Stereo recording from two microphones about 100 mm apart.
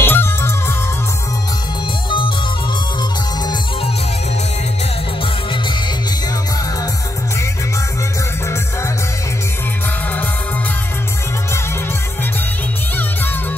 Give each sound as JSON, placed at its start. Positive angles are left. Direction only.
{"t": 0.0, "sound": "music", "side_deg": 25}
{"t": 2.0, "sound": "music", "side_deg": 55}